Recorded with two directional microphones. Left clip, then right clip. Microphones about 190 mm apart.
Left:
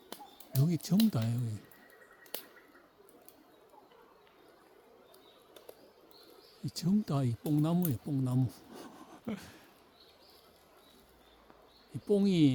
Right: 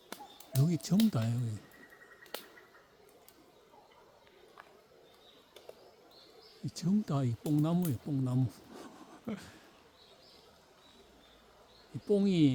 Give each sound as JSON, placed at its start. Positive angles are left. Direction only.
{"t": 0.5, "sound": "speech", "side_deg": 5}
{"t": 6.7, "sound": "speech", "side_deg": 15}
{"t": 12.0, "sound": "speech", "side_deg": 15}